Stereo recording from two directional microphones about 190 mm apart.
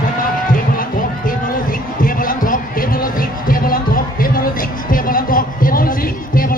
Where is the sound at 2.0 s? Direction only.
45° left (ahead or behind).